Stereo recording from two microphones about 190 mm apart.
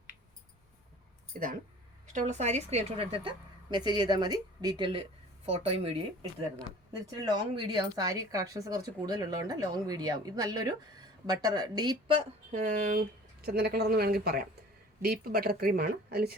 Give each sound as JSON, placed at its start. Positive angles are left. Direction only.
{"t": 2.1, "sound": "speech", "side_deg": -35}
{"t": 7.2, "sound": "a woman's voice", "side_deg": -25}